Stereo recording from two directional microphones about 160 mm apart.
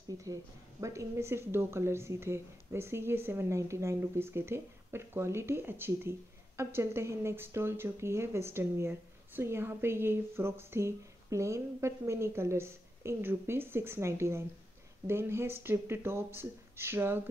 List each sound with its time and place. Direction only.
0.2 s speech: 20° right (ahead or behind)